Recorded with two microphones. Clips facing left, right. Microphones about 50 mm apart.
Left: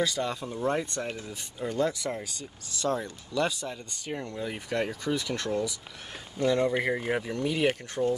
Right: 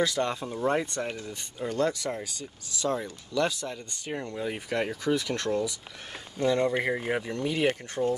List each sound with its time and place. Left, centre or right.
0.0 s speech: centre
1.1 s speech: centre
3.3 s speech: centre
4.0 s speech: centre
7.9 s speech: right